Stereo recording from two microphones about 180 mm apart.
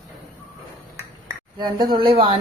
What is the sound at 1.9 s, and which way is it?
Speech, 30° right (ahead or behind).